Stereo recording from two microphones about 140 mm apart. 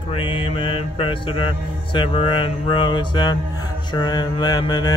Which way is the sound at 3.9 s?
30° left (ahead or behind).